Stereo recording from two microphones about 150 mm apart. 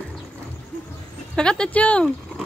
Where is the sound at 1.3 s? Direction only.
5° left (ahead or behind).